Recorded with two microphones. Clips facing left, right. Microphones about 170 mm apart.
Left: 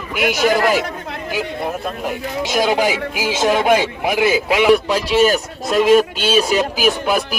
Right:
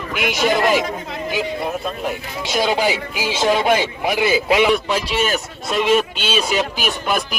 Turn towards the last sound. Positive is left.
turn(degrees=5)  # may be behind; listen again after turning